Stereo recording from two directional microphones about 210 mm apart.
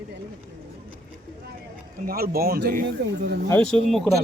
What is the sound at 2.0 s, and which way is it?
Speech, 45° right (ahead or behind).